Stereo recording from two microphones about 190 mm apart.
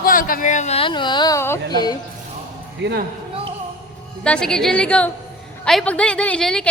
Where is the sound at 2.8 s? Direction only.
65° right (ahead or behind).